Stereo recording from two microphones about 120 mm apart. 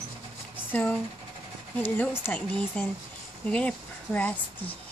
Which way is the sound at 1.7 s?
15° left (ahead or behind).